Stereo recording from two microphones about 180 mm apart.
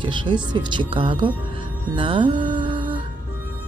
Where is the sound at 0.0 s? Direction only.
25° right (ahead or behind).